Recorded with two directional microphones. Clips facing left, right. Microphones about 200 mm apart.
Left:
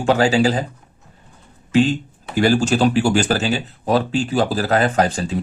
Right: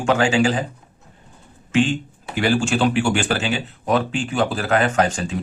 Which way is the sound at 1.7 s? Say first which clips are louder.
Left 3 dB; 35° left (ahead or behind).